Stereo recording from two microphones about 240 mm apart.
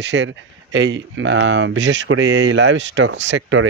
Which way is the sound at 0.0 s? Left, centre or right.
Right.